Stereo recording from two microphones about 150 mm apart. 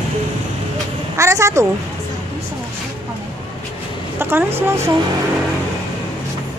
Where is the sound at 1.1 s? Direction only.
20° right (ahead or behind).